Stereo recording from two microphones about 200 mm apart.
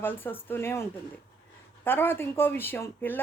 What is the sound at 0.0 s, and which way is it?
Speech, 10° left (ahead or behind).